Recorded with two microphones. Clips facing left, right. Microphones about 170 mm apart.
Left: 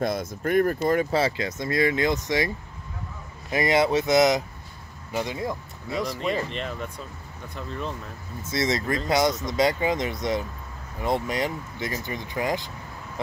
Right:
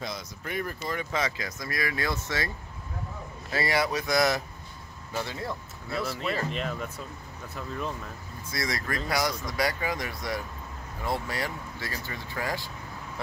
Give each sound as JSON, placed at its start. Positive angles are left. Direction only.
{"t": 0.0, "sound": "speech", "side_deg": 50}
{"t": 1.1, "sound": "speech", "side_deg": 30}
{"t": 3.5, "sound": "speech", "side_deg": 20}
{"t": 6.0, "sound": "speech", "side_deg": 0}
{"t": 8.5, "sound": "speech", "side_deg": 25}